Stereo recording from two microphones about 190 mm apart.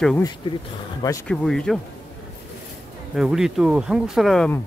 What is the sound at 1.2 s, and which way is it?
Speech, 5° left (ahead or behind).